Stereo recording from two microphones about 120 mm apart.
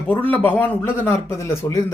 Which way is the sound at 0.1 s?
15° left (ahead or behind).